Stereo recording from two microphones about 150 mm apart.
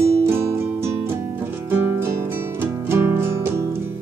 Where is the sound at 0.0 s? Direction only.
20° right (ahead or behind).